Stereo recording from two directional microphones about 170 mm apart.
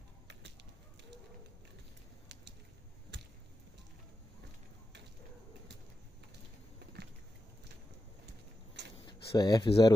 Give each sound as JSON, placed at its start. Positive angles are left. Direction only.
{"t": 9.0, "sound": "speech", "side_deg": 25}